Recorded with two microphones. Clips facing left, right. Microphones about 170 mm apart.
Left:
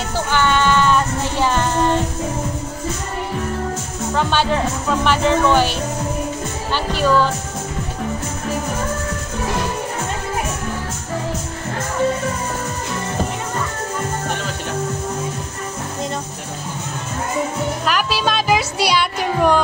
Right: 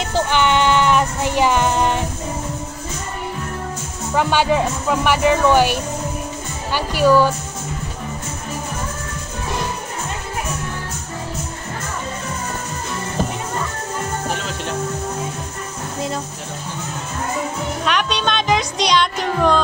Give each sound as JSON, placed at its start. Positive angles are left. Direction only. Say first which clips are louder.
{"t": 0.1, "sound": "music", "louder": "right 1 dB", "side_deg": -20}
{"t": 4.1, "sound": "speech", "louder": "right 2 dB", "side_deg": -10}
{"t": 6.7, "sound": "music", "louder": "right 3 dB", "side_deg": -10}
{"t": 17.8, "sound": "music", "louder": "right 1 dB", "side_deg": 5}